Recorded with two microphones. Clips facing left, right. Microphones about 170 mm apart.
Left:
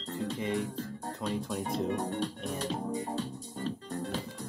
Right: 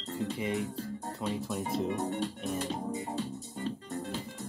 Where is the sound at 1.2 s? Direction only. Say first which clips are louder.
Even; 10° right (ahead or behind).